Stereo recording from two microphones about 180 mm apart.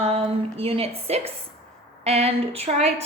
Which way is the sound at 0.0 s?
35° right (ahead or behind).